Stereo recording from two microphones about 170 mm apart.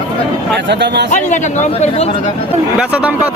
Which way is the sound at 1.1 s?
45° left (ahead or behind).